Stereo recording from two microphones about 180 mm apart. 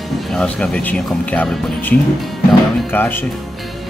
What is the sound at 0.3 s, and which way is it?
Speech, centre (ahead or behind).